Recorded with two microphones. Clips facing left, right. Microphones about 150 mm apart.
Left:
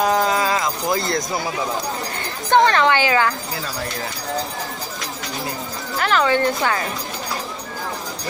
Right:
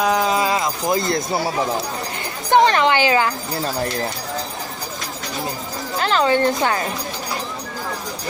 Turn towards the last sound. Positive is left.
turn(degrees=-25)  # may be behind; listen again after turning